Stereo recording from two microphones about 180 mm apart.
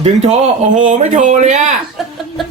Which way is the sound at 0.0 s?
40° right (ahead or behind).